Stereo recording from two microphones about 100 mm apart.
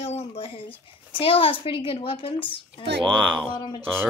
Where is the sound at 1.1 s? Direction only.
65° left (ahead or behind).